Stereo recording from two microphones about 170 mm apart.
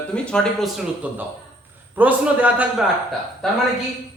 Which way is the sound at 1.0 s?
10° right (ahead or behind).